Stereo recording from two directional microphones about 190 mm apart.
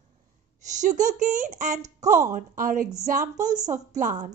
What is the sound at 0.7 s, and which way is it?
A woman's voice, 40° right (ahead or behind).